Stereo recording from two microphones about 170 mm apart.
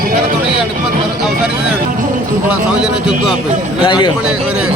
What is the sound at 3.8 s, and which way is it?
Speech, 25° left (ahead or behind).